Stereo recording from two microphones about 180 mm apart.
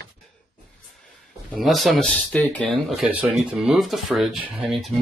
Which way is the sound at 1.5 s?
Centre (ahead or behind).